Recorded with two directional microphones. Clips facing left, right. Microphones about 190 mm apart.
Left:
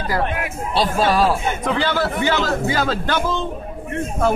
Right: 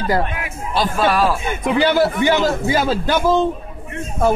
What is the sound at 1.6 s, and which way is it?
A man's voice, 15° right (ahead or behind).